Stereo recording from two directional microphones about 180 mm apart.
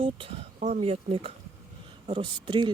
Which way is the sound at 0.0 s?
30° right (ahead or behind).